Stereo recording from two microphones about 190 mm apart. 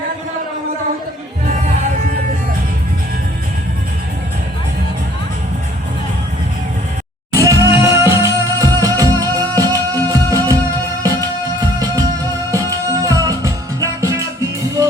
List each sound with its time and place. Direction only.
7.3 s music: 15° right (ahead or behind)
11.8 s music: 20° right (ahead or behind)